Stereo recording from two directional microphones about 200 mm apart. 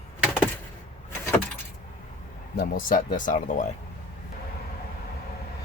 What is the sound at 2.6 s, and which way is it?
Speech, 45° left (ahead or behind).